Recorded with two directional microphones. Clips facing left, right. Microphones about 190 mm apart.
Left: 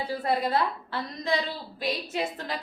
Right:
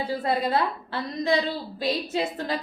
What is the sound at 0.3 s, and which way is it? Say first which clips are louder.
A woman's voice: right 1 dB; 25° right (ahead or behind).